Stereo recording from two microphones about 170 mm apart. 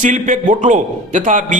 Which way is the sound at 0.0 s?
50° right (ahead or behind).